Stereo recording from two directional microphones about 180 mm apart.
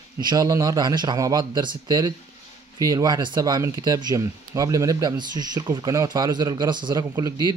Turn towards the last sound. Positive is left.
turn(degrees=-20)  # may be behind; listen again after turning